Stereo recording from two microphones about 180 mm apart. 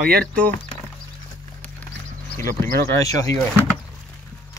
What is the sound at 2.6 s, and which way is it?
Speech, 15° left (ahead or behind).